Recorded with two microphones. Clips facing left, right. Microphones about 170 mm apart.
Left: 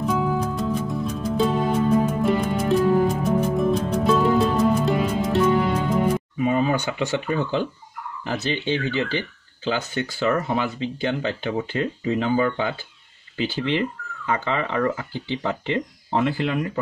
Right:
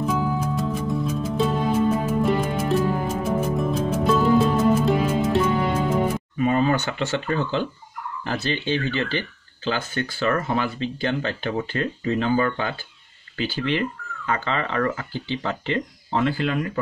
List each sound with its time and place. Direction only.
0.0 s music: centre (ahead or behind)
6.3 s speech: 10° left (ahead or behind)